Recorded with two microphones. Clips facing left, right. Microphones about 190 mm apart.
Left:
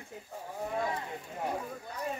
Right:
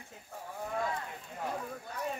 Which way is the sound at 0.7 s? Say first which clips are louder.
Left 1 dB; 20° left (ahead or behind).